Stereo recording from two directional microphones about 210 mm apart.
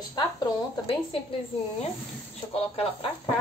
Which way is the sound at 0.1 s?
20° left (ahead or behind).